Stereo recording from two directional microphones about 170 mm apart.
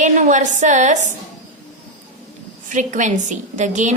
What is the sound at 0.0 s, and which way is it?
A woman's voice, 50° right (ahead or behind).